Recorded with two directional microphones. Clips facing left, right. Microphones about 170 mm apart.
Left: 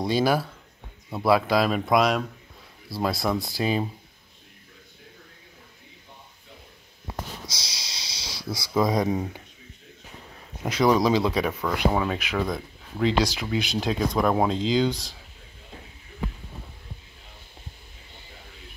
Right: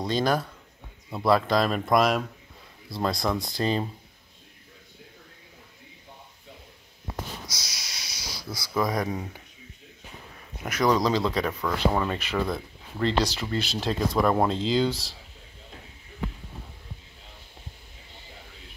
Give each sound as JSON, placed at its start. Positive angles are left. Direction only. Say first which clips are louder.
{"t": 0.0, "sound": "speech", "louder": "left 2 dB", "side_deg": 5}
{"t": 7.4, "sound": "snort", "louder": "left 2 dB", "side_deg": 30}
{"t": 8.4, "sound": "speech", "louder": "left 4 dB", "side_deg": 10}
{"t": 11.0, "sound": "speech", "louder": "left 3 dB", "side_deg": 5}
{"t": 13.7, "sound": "speech", "louder": "even", "side_deg": 0}